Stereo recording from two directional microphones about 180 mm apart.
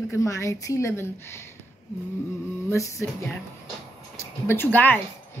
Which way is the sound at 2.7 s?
15° left (ahead or behind).